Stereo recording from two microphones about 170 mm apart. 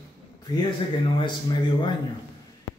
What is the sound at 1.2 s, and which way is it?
Speech, 30° left (ahead or behind).